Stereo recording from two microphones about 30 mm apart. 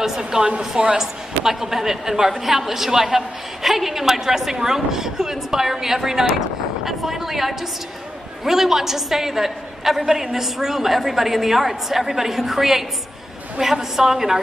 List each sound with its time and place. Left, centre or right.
0.2 s speech: right
0.9 s a woman's voice: centre